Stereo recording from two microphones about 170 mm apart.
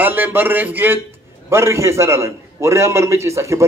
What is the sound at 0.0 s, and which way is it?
A man's voice, 10° right (ahead or behind).